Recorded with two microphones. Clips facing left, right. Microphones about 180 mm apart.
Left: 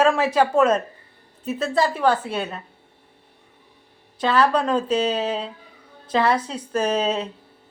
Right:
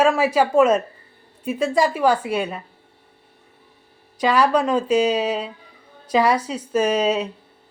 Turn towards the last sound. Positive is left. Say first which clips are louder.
# right 3 dB
turn(degrees=-10)  # may be behind; listen again after turning